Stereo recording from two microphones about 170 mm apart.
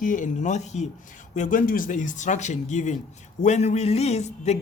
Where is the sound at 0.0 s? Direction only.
50° left (ahead or behind).